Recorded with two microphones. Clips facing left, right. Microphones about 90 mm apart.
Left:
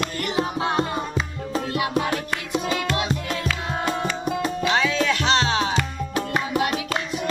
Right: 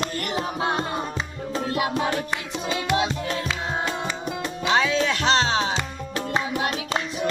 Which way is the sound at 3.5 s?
20° right (ahead or behind).